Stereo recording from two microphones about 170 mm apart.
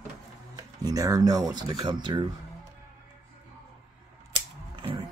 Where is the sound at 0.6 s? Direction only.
20° right (ahead or behind).